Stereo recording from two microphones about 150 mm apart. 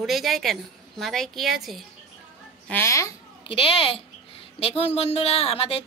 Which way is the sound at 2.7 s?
20° left (ahead or behind).